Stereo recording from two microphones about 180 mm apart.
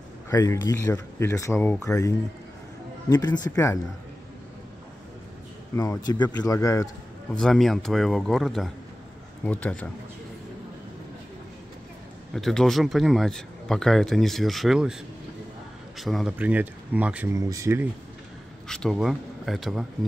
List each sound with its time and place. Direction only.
0.3 s speech: 15° left (ahead or behind)
5.8 s speech: 20° left (ahead or behind)
7.3 s speech: centre (ahead or behind)
12.4 s speech: centre (ahead or behind)
16.0 s speech: centre (ahead or behind); by 17.8 s 15° right (ahead or behind)
18.7 s speech: centre (ahead or behind)